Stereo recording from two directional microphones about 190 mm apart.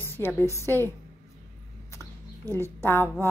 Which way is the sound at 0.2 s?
15° left (ahead or behind).